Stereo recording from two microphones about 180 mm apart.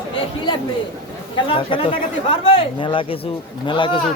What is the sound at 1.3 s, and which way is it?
Speech, 30° left (ahead or behind).